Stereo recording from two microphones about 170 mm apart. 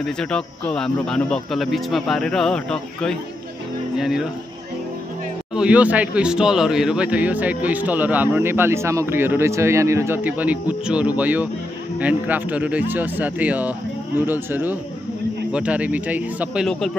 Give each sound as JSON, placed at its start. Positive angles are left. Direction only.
{"t": 0.0, "sound": "speech", "side_deg": 5}
{"t": 5.6, "sound": "speech", "side_deg": -10}